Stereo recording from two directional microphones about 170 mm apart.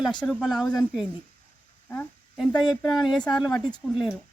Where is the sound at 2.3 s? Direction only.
Centre (ahead or behind).